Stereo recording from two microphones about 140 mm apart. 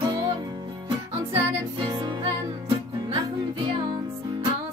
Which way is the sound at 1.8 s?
30° right (ahead or behind).